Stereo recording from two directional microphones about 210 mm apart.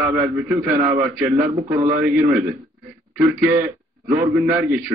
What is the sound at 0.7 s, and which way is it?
Speech, 35° right (ahead or behind).